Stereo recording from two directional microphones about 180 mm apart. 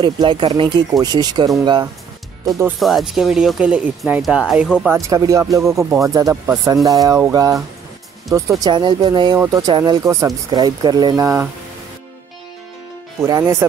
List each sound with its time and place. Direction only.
0.0 s speech: 25° right (ahead or behind)
2.8 s speech: centre (ahead or behind)
5.0 s speech: 20° right (ahead or behind)
13.2 s speech: 20° right (ahead or behind)